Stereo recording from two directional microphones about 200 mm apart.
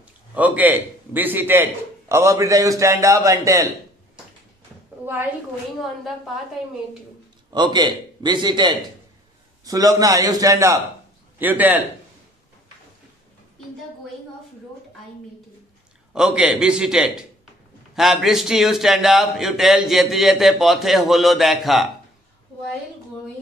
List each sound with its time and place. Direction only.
0.0 s a man's voice: 5° right (ahead or behind)
7.5 s a man's voice: 20° right (ahead or behind)
16.1 s a man's voice: 5° right (ahead or behind)